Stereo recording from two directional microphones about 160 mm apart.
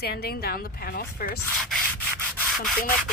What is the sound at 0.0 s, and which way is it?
Speech, 85° left.